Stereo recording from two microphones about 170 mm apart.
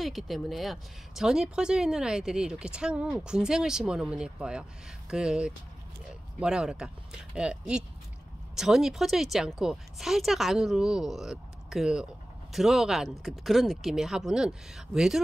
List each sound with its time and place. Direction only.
0.0 s speech: centre (ahead or behind)